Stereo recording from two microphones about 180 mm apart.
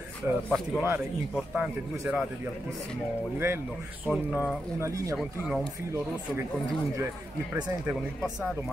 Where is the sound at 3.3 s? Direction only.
15° right (ahead or behind).